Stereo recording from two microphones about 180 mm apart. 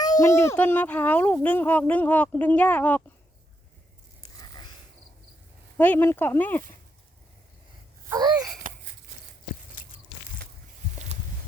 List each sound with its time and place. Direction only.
0.0 s speech: 20° left (ahead or behind)
5.7 s speech: 10° left (ahead or behind)
8.1 s a sound: 20° right (ahead or behind)